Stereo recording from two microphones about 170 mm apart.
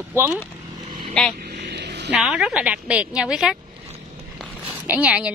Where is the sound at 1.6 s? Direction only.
85° right.